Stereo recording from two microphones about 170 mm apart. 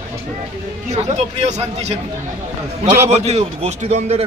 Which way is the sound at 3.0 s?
40° right (ahead or behind).